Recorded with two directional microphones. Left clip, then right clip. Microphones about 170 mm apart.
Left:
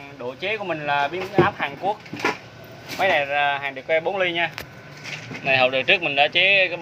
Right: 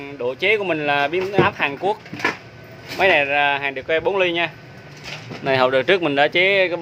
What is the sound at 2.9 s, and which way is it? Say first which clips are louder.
Speech: right 4 dB; 20° right (ahead or behind).